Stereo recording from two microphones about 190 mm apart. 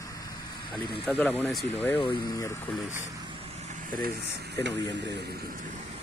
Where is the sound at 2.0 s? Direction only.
25° left (ahead or behind).